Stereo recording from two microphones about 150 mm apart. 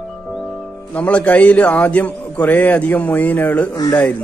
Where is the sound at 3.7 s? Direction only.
25° left (ahead or behind).